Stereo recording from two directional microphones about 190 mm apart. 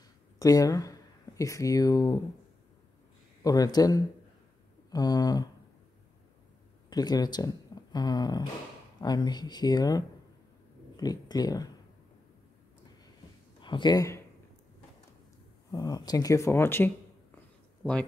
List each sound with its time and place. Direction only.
0.4 s speech: 20° left (ahead or behind)
3.4 s speech: 20° left (ahead or behind)
6.9 s speech: 20° left (ahead or behind)
13.6 s speech: 25° left (ahead or behind)
15.7 s speech: 20° left (ahead or behind)